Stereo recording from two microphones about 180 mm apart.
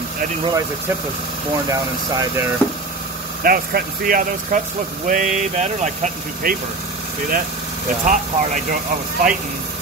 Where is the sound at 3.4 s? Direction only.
55° right (ahead or behind).